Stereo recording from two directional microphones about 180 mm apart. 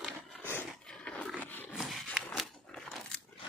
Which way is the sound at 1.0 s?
5° left (ahead or behind).